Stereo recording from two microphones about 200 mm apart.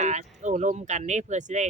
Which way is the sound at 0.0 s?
35° right (ahead or behind).